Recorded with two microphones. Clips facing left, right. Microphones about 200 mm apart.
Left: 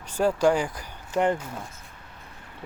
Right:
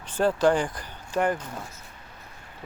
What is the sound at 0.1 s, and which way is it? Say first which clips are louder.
Speech: even; 10° left (ahead or behind).